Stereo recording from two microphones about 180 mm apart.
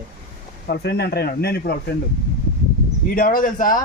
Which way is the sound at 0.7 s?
65° left (ahead or behind).